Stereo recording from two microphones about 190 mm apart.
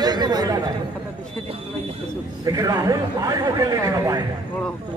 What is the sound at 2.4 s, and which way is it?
Speech, 20° right (ahead or behind).